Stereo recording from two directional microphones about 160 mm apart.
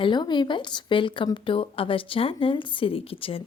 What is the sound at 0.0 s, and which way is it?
Speech, 30° left (ahead or behind).